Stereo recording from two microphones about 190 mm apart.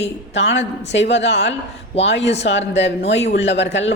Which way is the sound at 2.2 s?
35° left (ahead or behind).